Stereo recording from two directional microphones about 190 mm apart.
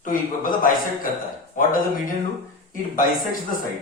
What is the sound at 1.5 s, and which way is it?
A man's voice, 45° left (ahead or behind).